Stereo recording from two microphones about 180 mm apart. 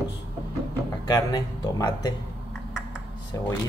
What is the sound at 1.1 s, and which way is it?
Speech, 20° left (ahead or behind).